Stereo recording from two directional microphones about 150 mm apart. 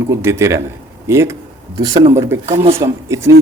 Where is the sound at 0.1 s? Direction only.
15° right (ahead or behind).